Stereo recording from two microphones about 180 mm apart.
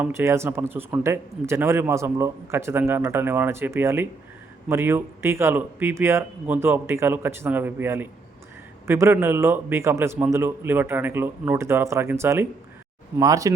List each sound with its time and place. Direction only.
0.0 s speech: 15° right (ahead or behind)